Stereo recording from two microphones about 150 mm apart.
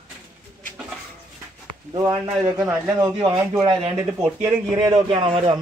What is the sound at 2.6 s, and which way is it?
Speech, 15° right (ahead or behind).